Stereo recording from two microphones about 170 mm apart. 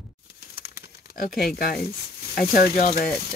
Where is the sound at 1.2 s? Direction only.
55° left (ahead or behind).